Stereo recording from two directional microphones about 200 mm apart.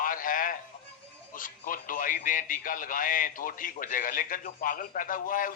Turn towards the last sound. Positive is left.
turn(degrees=45)  # may be behind; listen again after turning